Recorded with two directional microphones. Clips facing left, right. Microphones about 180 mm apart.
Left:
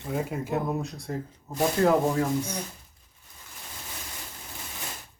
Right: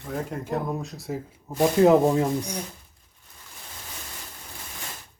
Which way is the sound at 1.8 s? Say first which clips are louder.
Right 5 dB; 20° right (ahead or behind).